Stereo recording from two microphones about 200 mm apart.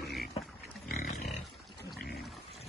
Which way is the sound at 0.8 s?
40° left (ahead or behind).